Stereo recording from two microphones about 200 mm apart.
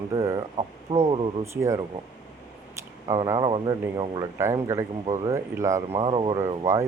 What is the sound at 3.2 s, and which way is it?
Speech, 25° right (ahead or behind).